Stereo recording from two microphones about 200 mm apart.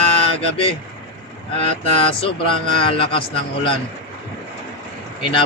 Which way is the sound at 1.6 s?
30° left (ahead or behind).